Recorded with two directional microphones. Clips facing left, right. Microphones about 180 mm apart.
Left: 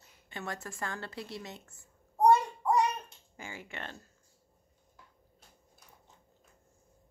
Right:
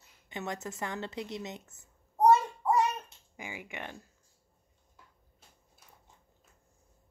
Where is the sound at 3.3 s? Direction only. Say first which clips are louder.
Right 2 dB; 15° right (ahead or behind).